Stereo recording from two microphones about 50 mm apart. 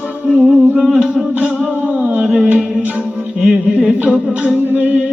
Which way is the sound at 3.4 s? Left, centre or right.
Centre.